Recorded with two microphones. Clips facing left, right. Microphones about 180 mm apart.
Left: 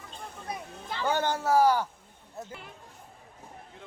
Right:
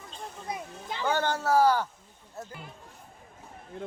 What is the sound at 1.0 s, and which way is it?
Speech, 15° left (ahead or behind).